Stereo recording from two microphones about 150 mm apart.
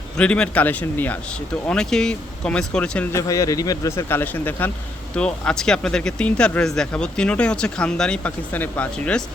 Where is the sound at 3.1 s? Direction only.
20° left (ahead or behind).